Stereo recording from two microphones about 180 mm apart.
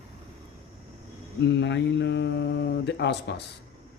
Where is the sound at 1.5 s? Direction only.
80° left.